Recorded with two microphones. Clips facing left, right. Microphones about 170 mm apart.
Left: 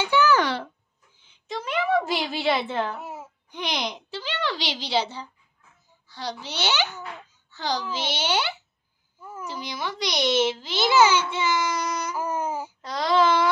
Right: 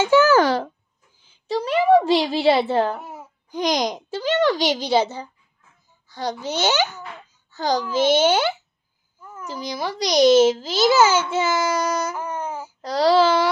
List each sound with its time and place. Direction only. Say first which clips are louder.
0.0 s a child's voice: right 6 dB; 45° right (ahead or behind)
3.0 s babbling: even; centre (ahead or behind)
3.5 s a child's voice: right 8 dB; 40° right (ahead or behind)
9.2 s babbling: left 1 dB; 10° left (ahead or behind)
9.7 s a child's voice: right 7 dB; 35° right (ahead or behind)
12.2 s babbling: left 1 dB; 10° left (ahead or behind)
12.8 s a child's voice: right 5 dB; 35° right (ahead or behind)